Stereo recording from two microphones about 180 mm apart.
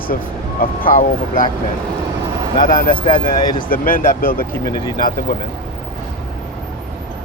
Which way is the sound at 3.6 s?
50° left (ahead or behind).